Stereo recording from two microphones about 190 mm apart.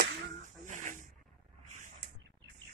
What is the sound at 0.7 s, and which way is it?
Snake, 40° right (ahead or behind).